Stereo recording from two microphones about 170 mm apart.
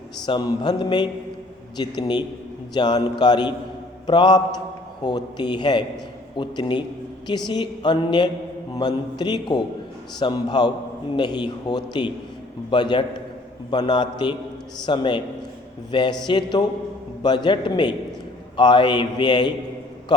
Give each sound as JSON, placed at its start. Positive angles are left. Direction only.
{"t": 0.3, "sound": "a man's voice", "side_deg": 25}